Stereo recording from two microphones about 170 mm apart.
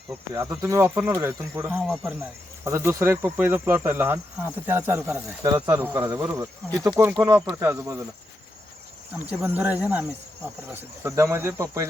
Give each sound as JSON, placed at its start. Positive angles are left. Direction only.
{"t": 0.5, "sound": "cricket", "side_deg": -15}
{"t": 1.6, "sound": "speech", "side_deg": 0}
{"t": 2.6, "sound": "cricket", "side_deg": -15}
{"t": 6.7, "sound": "speech", "side_deg": -20}
{"t": 9.1, "sound": "cricket", "side_deg": -10}